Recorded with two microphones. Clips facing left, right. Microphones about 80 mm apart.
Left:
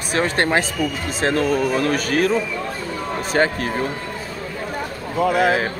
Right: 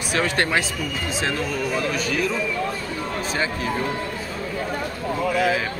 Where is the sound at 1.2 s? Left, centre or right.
Left.